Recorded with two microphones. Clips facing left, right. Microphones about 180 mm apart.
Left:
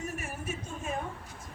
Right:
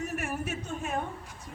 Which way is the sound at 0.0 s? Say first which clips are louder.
Right 4 dB; 65° right (ahead or behind).